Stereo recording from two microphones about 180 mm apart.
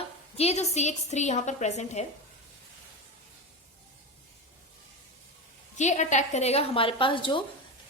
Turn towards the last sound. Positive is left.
turn(degrees=30)  # may be behind; listen again after turning